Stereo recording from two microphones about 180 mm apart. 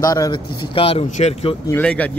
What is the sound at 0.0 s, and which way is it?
Speech, 20° left (ahead or behind).